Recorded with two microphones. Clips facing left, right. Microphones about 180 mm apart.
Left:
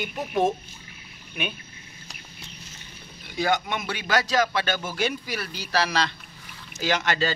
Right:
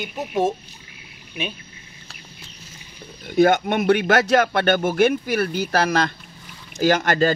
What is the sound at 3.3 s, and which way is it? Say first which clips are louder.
Speech: right 9 dB; 50° right (ahead or behind).